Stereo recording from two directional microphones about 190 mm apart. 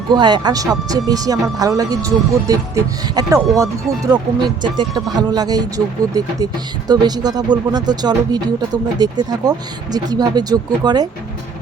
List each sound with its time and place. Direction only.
0.1 s speech: 25° right (ahead or behind)